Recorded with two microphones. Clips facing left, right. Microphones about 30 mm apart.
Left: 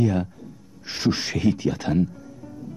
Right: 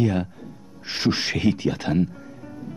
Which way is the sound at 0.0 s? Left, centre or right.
Right.